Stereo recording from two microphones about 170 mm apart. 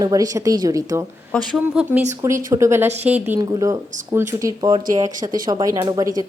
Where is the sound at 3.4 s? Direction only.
20° right (ahead or behind).